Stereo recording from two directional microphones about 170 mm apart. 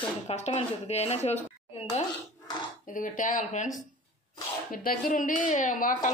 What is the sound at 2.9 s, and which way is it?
Speech, 50° left (ahead or behind).